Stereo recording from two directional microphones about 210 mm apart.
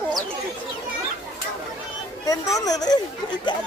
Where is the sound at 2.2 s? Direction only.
15° left (ahead or behind).